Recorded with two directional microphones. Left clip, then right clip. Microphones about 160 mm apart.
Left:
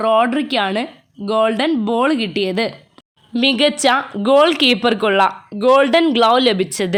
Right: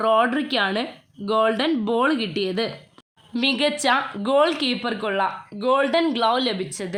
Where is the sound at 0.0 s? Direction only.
35° left (ahead or behind).